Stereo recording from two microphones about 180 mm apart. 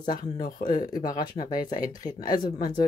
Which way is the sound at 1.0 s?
20° left (ahead or behind).